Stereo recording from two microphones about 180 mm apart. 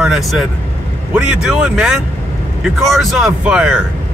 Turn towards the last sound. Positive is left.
turn(degrees=-5)  # may be behind; listen again after turning